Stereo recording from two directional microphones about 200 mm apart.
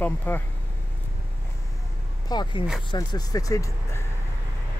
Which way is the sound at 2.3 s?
20° left (ahead or behind).